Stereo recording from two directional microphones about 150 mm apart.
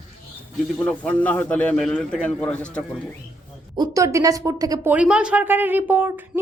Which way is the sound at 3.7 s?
25° right (ahead or behind).